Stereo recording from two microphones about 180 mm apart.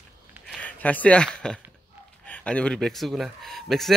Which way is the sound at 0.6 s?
10° left (ahead or behind).